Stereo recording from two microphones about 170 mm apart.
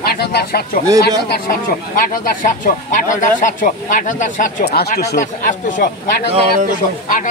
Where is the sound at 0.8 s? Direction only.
20° right (ahead or behind).